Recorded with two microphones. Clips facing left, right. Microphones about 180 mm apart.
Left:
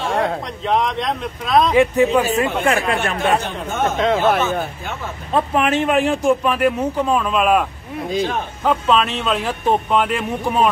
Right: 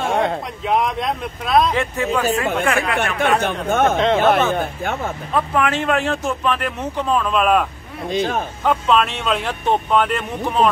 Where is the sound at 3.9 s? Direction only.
Centre (ahead or behind).